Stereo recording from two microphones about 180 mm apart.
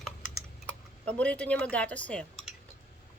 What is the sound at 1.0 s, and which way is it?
A woman's voice, 5° left (ahead or behind).